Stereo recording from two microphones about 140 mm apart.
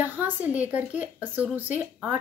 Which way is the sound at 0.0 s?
15° right (ahead or behind).